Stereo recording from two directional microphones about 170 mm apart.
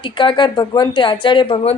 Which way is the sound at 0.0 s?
30° left (ahead or behind).